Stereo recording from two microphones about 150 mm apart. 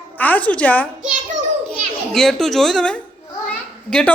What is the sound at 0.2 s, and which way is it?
Speech, 10° left (ahead or behind).